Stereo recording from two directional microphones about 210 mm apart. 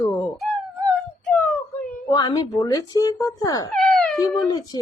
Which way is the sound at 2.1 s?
20° left (ahead or behind).